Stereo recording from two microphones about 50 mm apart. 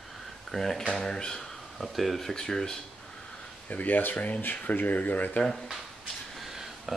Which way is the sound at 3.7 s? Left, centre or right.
Left.